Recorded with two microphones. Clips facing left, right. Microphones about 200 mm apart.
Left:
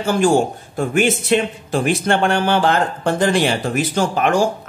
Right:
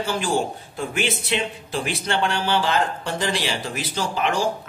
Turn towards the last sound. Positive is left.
turn(degrees=50)  # may be behind; listen again after turning